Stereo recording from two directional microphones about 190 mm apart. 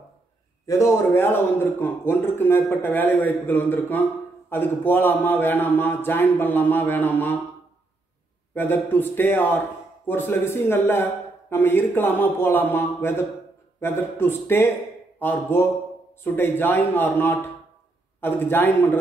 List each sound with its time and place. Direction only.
0.7 s a man's voice: 15° left (ahead or behind)
8.5 s a man's voice: 10° left (ahead or behind)